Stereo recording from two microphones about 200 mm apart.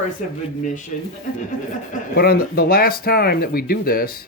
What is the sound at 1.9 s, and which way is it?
Speech, 50° left (ahead or behind).